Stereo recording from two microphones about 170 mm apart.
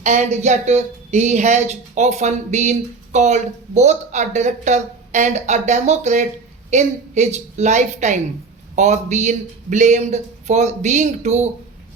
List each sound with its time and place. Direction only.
0.0 s a woman's voice: 45° right (ahead or behind)